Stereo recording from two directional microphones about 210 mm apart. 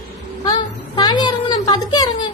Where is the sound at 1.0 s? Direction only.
20° left (ahead or behind).